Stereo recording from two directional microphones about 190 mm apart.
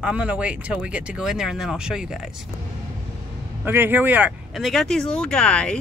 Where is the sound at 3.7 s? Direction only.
10° right (ahead or behind).